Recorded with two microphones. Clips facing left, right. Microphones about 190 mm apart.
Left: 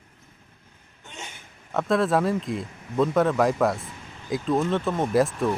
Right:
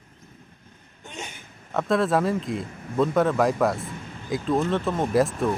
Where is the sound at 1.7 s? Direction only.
Centre (ahead or behind).